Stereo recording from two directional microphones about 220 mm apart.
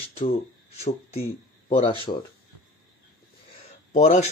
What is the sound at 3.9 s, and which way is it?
Speech, 35° left (ahead or behind).